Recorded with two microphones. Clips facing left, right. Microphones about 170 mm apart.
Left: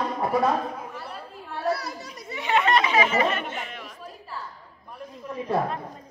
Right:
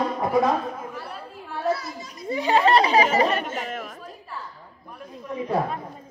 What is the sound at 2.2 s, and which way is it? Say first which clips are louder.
Speech: right 4 dB; 35° right (ahead or behind).